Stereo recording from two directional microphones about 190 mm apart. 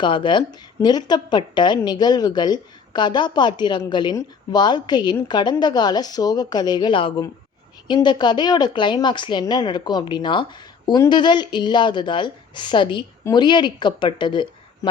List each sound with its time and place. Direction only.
0.0 s a woman's voice: 25° left (ahead or behind)